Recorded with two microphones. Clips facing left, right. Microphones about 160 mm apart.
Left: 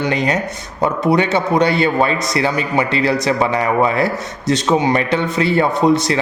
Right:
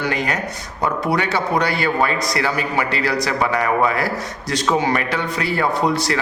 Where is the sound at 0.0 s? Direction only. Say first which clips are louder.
Left 4 dB; 20° left (ahead or behind).